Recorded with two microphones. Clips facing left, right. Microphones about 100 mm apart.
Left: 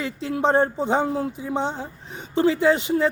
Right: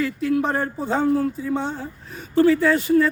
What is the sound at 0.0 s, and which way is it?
Speech, 25° left (ahead or behind).